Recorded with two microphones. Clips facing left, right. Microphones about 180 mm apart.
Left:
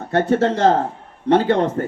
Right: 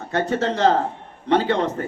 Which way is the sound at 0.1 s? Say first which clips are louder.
Left 5 dB; 50° left (ahead or behind).